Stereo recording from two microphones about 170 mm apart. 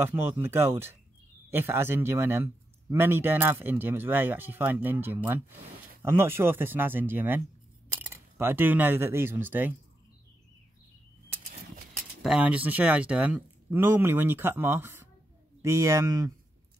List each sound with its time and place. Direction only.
0.0 s a man's voice: 10° right (ahead or behind)
11.9 s a man's voice: centre (ahead or behind); by 16.3 s 15° right (ahead or behind)